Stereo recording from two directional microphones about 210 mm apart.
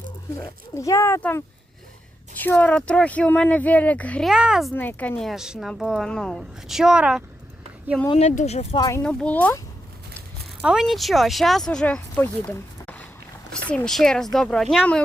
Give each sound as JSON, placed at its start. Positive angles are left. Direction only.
{"t": 0.3, "sound": "speech", "side_deg": 15}
{"t": 4.7, "sound": "speech", "side_deg": 10}
{"t": 8.0, "sound": "speech", "side_deg": 30}
{"t": 9.0, "sound": "speech", "side_deg": 5}
{"t": 10.6, "sound": "speech", "side_deg": -5}